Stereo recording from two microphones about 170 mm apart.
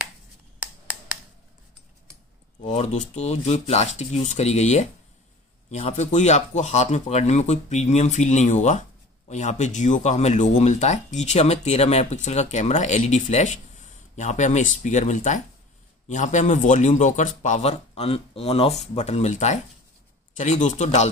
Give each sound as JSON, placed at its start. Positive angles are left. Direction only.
{"t": 2.6, "sound": "speech", "side_deg": 40}